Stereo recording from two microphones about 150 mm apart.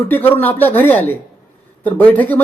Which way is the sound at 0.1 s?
15° left (ahead or behind).